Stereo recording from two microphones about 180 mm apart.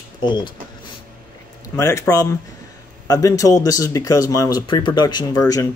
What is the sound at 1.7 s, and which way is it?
Speech, 15° left (ahead or behind).